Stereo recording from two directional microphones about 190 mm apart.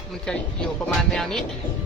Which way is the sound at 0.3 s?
5° left (ahead or behind).